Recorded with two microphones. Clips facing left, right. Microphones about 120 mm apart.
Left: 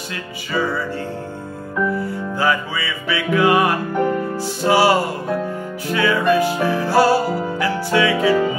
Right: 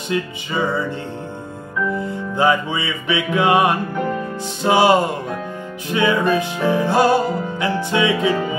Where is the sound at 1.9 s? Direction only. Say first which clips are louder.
Right 1 dB; 20° right (ahead or behind).